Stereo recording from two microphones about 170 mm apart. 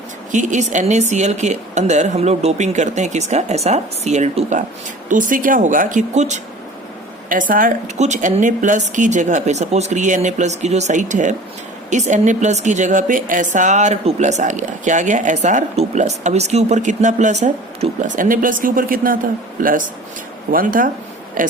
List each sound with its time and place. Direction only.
0.3 s a woman's voice: 45° right (ahead or behind)